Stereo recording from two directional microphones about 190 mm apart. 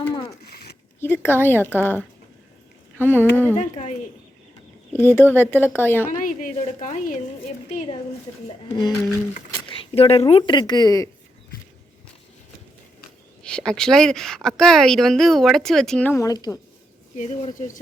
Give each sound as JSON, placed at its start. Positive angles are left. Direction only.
{"t": 0.1, "sound": "a sound", "side_deg": 15}
{"t": 0.4, "sound": "zipper", "side_deg": 55}
{"t": 0.9, "sound": "a woman's voice", "side_deg": 10}
{"t": 3.6, "sound": "speech", "side_deg": 40}
{"t": 4.9, "sound": "a woman's voice", "side_deg": 10}
{"t": 6.1, "sound": "a woman's voice", "side_deg": 45}
{"t": 8.7, "sound": "speech", "side_deg": 20}
{"t": 13.4, "sound": "a woman's voice", "side_deg": 5}